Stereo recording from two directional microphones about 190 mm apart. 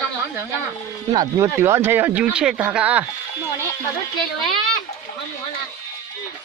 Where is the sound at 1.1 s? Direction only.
20° right (ahead or behind).